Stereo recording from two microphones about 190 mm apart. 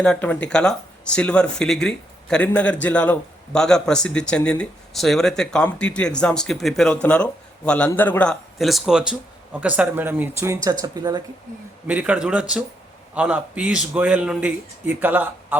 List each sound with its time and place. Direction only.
0.0 s speech: 5° left (ahead or behind); by 11.2 s 20° right (ahead or behind)
11.9 s a man's voice: 5° right (ahead or behind)